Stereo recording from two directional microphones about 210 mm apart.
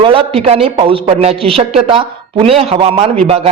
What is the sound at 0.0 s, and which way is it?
A man's voice, 25° right (ahead or behind).